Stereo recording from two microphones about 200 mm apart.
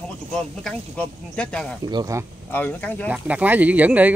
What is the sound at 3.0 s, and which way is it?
Speech, 5° right (ahead or behind).